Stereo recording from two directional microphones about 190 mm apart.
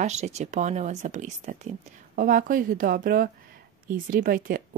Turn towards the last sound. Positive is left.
turn(degrees=-50)  # may be behind; listen again after turning